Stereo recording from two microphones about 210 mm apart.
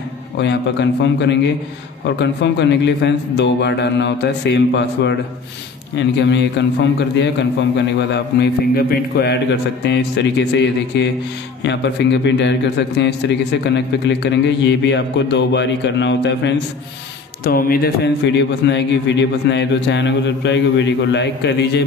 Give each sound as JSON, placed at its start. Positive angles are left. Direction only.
{"t": 0.4, "sound": "a man's voice", "side_deg": 55}
{"t": 17.4, "sound": "a man's voice", "side_deg": 45}